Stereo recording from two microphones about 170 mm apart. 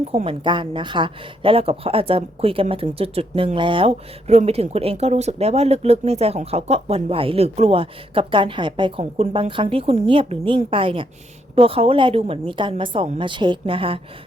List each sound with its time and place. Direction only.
0.1 s a woman's voice: 35° right (ahead or behind)